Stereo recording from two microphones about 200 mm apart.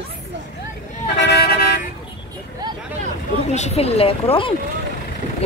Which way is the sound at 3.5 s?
30° left (ahead or behind).